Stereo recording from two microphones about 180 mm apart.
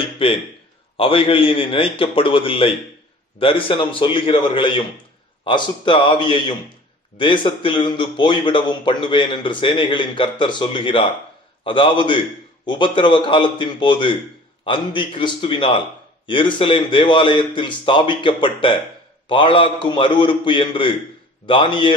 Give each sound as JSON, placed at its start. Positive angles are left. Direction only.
{"t": 0.0, "sound": "a man's voice", "side_deg": 30}